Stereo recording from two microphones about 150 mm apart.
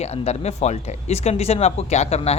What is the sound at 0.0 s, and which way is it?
Speech, 45° left (ahead or behind).